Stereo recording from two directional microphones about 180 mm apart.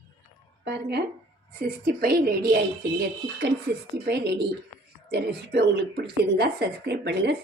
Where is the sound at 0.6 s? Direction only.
65° right (ahead or behind).